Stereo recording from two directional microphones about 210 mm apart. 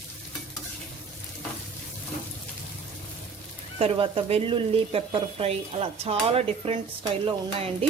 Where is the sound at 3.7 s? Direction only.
25° right (ahead or behind).